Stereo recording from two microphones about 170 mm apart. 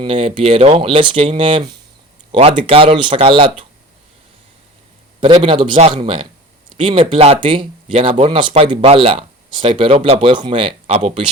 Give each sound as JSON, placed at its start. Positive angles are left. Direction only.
{"t": 0.0, "sound": "speech", "side_deg": -30}
{"t": 5.2, "sound": "speech", "side_deg": -30}